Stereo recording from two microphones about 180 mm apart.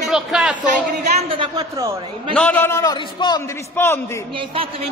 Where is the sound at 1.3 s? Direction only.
25° right (ahead or behind).